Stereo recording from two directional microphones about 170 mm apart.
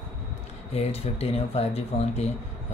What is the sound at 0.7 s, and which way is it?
Speech, 35° left (ahead or behind).